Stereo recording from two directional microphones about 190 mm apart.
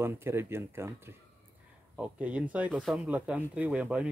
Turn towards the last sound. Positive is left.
turn(degrees=-5)  # may be behind; listen again after turning